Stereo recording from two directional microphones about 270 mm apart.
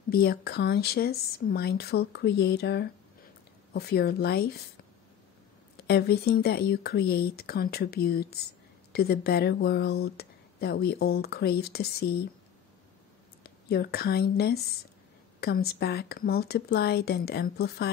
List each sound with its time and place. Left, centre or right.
0.1 s speech: left
5.9 s speech: left
13.4 s speech: left